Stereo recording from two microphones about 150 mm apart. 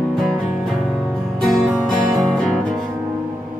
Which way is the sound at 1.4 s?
Centre (ahead or behind).